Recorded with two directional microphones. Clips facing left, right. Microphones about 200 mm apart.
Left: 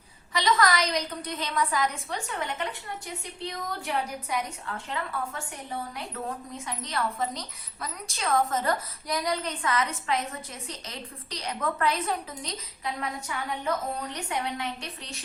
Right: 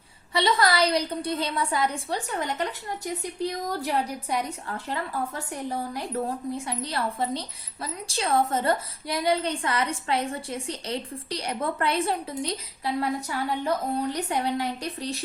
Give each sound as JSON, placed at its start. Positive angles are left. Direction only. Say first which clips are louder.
{"t": 0.3, "sound": "a woman's voice", "louder": "right 2 dB", "side_deg": -30}